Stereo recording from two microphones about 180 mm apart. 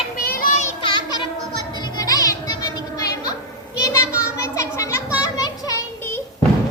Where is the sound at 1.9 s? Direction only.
20° left (ahead or behind).